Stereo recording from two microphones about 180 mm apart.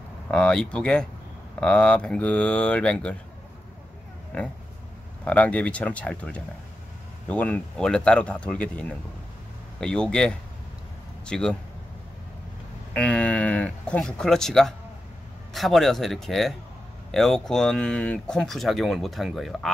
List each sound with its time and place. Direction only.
0.3 s speech: 5° left (ahead or behind)
4.3 s speech: 5° left (ahead or behind)
12.9 s speech: 5° left (ahead or behind)